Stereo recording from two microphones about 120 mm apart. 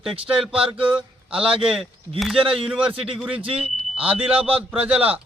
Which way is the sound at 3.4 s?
50° right (ahead or behind).